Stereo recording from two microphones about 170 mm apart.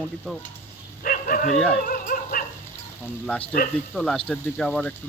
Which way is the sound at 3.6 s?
60° left (ahead or behind).